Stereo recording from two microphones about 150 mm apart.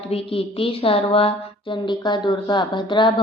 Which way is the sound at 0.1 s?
40° left (ahead or behind).